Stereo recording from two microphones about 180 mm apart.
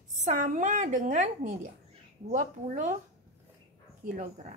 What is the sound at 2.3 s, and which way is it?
Speech, 40° right (ahead or behind).